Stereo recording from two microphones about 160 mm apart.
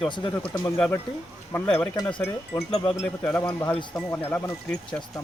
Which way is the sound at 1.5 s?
10° left (ahead or behind).